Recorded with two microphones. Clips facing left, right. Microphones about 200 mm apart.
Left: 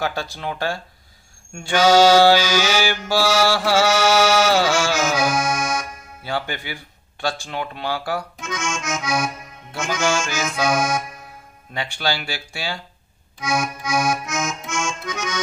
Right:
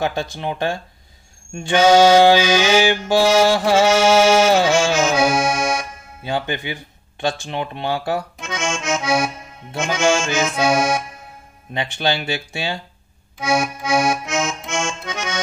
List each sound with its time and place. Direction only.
0.0 s mantra: 20° right (ahead or behind)
13.4 s accordion: 30° right (ahead or behind)